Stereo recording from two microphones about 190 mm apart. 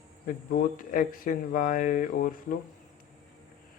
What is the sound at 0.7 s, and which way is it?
Speech, 45° left (ahead or behind).